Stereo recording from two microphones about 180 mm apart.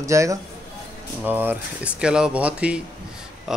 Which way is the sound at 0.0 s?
15° right (ahead or behind).